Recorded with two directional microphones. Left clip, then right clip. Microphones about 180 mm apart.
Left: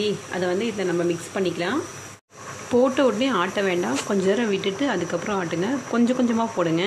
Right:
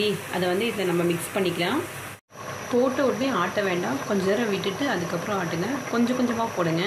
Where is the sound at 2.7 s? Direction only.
50° left (ahead or behind).